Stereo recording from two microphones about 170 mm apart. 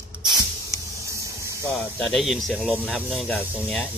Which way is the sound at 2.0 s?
Centre (ahead or behind).